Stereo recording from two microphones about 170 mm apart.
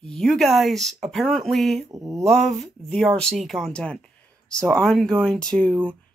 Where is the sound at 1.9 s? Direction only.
20° right (ahead or behind).